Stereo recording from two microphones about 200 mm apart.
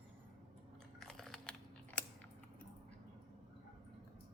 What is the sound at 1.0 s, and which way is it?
Biting, centre (ahead or behind).